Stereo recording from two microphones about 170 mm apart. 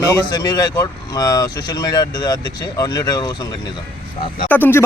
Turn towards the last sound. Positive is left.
turn(degrees=10)  # may be behind; listen again after turning